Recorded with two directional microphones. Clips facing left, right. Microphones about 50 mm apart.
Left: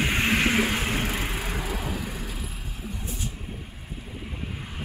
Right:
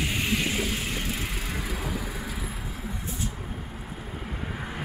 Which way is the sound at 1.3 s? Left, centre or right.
Centre.